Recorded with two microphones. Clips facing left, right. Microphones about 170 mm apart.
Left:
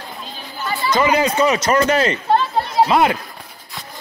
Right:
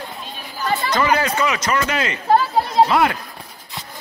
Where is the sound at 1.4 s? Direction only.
35° left (ahead or behind).